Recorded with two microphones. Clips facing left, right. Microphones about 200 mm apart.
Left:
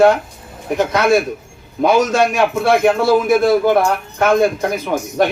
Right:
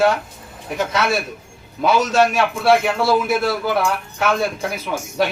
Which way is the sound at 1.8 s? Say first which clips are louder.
Left 3 dB; 45° left (ahead or behind).